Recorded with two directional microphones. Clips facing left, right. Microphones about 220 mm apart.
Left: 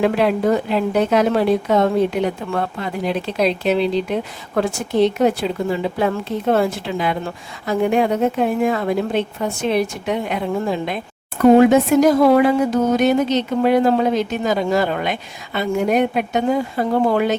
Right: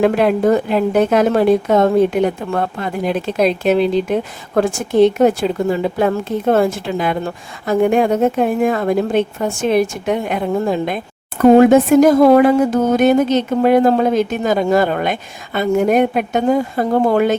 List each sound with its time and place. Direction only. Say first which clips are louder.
0.0 s a woman's voice: right 3 dB; 50° right (ahead or behind)